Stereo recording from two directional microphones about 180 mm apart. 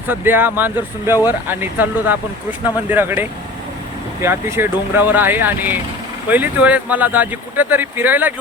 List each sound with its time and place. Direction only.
0.1 s speech: 10° right (ahead or behind)